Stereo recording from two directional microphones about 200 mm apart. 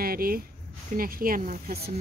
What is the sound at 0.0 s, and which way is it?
Speech, 50° right (ahead or behind).